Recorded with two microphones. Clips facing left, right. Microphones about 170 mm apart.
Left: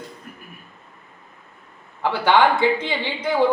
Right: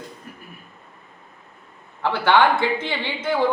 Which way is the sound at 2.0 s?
15° left (ahead or behind).